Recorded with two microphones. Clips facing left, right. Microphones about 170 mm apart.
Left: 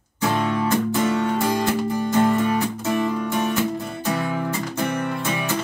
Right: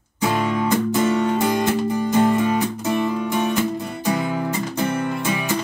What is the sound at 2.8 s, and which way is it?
Music, 5° right (ahead or behind).